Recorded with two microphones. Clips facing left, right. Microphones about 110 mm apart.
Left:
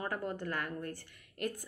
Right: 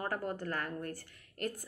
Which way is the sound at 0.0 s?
40° right (ahead or behind).